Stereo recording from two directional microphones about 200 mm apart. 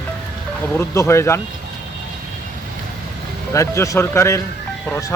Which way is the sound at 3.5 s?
15° left (ahead or behind).